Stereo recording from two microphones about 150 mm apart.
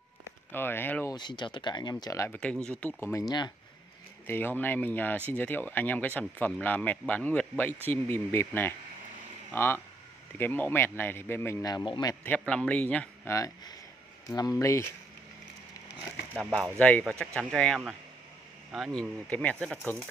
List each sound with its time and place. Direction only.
0.2 s a sound: 15° left (ahead or behind)
1.1 s speech: 30° left (ahead or behind); by 2.9 s 10° left (ahead or behind)
3.0 s speech: 20° left (ahead or behind)
4.3 s speech: 15° left (ahead or behind)
12.2 s speech: 10° left (ahead or behind)
13.3 s speech: 20° left (ahead or behind)
16.5 s speech: 10° left (ahead or behind)